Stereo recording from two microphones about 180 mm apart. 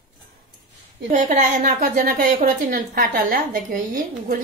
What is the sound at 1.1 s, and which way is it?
A woman's voice, 45° right (ahead or behind).